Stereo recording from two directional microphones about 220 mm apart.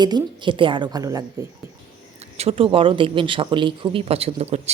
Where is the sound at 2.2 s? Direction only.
30° right (ahead or behind).